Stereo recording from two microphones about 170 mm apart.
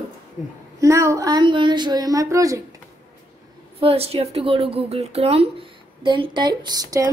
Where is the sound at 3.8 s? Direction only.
35° right (ahead or behind).